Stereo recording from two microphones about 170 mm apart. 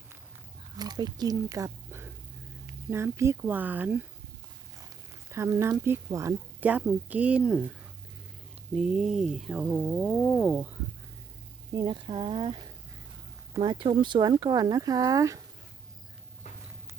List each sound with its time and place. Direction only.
0.8 s speech: 25° right (ahead or behind)
5.3 s speech: 15° right (ahead or behind)
8.7 s speech: 5° right (ahead or behind)
11.7 s speech: 25° right (ahead or behind)